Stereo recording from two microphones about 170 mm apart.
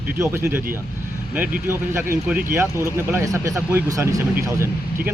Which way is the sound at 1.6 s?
15° right (ahead or behind).